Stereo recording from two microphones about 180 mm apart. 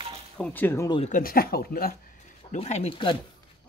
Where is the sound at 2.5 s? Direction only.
40° left (ahead or behind).